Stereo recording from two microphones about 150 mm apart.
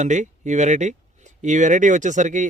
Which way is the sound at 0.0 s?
55° right (ahead or behind).